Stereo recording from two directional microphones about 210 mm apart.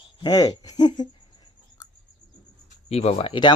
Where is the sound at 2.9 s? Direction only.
30° left (ahead or behind).